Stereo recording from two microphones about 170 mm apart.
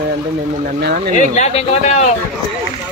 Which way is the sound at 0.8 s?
60° right (ahead or behind).